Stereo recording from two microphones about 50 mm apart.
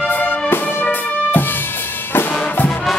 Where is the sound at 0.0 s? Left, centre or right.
Left.